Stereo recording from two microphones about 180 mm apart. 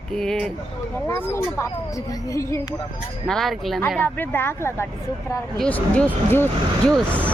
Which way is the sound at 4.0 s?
10° left (ahead or behind).